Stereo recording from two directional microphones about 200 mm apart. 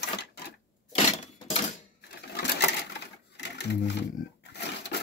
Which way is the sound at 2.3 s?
55° left (ahead or behind).